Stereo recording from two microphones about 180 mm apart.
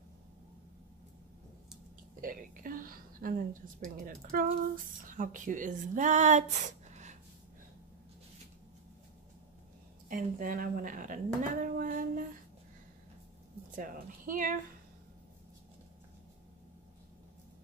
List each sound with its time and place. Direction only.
2.2 s a sound: 50° right (ahead or behind)
3.8 s a woman's voice: 50° right (ahead or behind)
10.0 s speech: 50° right (ahead or behind)
13.7 s a woman's voice: 50° right (ahead or behind)